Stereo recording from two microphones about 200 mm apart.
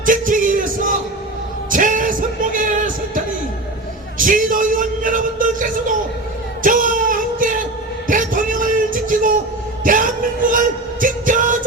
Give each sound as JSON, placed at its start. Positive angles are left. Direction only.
{"t": 0.0, "sound": "music", "side_deg": -40}
{"t": 4.2, "sound": "a sound", "side_deg": -40}
{"t": 11.0, "sound": "music", "side_deg": -40}